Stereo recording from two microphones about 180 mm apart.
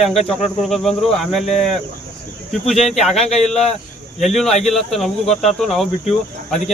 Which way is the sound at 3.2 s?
35° left (ahead or behind).